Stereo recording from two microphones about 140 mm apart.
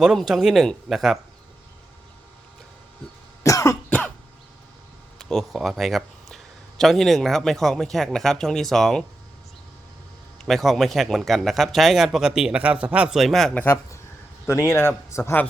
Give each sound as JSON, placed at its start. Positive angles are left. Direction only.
{"t": 0.0, "sound": "speech", "side_deg": -5}
{"t": 3.4, "sound": "cough", "side_deg": 25}
{"t": 3.8, "sound": "throat clearing", "side_deg": 10}
{"t": 5.3, "sound": "speech", "side_deg": 0}
{"t": 10.4, "sound": "speech", "side_deg": 0}